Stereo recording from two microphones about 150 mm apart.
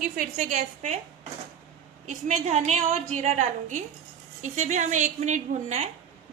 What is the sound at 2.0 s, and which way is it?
A woman's voice, 55° right (ahead or behind).